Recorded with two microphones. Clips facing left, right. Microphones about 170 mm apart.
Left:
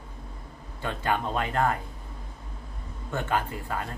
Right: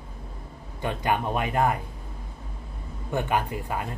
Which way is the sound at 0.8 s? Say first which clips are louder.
Right 2 dB; 15° right (ahead or behind).